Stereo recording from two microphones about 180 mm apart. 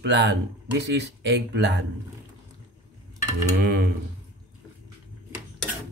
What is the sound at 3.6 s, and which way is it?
Speech, 60° right (ahead or behind).